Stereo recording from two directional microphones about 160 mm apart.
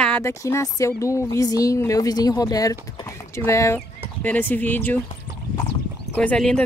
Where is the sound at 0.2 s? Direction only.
20° left (ahead or behind).